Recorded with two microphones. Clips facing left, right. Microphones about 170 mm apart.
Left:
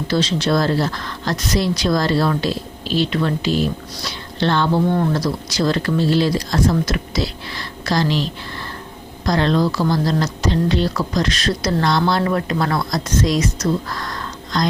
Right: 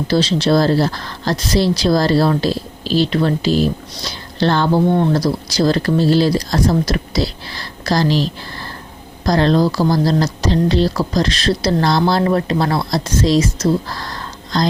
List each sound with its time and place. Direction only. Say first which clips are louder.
0.1 s speech: right 4 dB; 35° right (ahead or behind)